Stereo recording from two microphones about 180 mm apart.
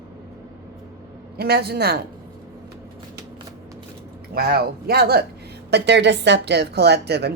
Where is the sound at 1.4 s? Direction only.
60° right (ahead or behind).